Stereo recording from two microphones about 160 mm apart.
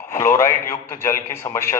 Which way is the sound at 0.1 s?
15° left (ahead or behind).